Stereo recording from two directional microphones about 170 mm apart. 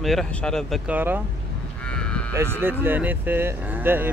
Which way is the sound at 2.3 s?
15° right (ahead or behind).